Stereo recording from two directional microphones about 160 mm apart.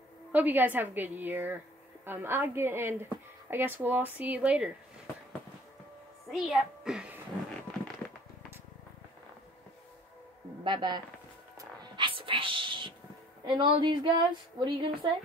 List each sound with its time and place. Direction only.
0.3 s a woman's voice: 10° right (ahead or behind)
6.3 s a child's voice: 5° right (ahead or behind)
10.6 s speech: 30° right (ahead or behind)
11.5 s whispering: 30° right (ahead or behind)
13.6 s a woman's voice: 30° right (ahead or behind)